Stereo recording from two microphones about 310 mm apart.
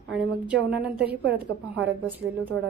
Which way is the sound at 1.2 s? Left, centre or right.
Right.